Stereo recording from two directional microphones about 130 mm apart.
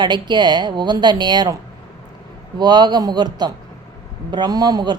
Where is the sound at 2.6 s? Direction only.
35° right (ahead or behind).